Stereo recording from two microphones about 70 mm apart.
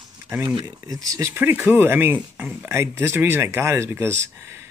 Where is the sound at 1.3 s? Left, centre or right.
Right.